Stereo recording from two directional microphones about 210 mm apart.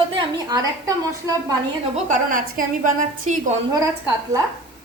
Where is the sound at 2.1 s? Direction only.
40° right (ahead or behind).